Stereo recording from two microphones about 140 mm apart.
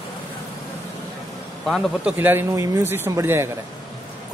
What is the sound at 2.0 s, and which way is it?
A man's voice, 10° right (ahead or behind).